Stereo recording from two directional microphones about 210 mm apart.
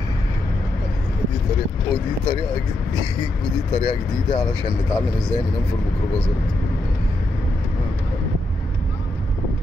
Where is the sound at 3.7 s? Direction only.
20° left (ahead or behind).